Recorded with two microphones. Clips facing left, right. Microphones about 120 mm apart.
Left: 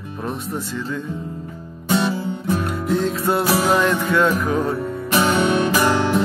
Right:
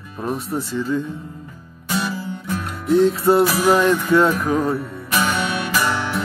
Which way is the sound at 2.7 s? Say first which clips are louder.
Right 4 dB; centre (ahead or behind).